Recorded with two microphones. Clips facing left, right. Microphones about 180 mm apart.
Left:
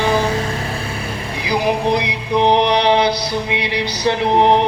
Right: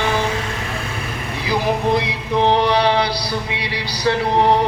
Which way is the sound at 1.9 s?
15° left (ahead or behind).